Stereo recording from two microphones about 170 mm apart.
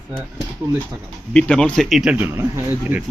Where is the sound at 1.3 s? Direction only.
5° left (ahead or behind); by 2.4 s 10° right (ahead or behind).